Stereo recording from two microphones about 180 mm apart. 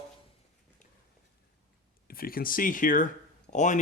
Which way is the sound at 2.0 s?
55° left (ahead or behind).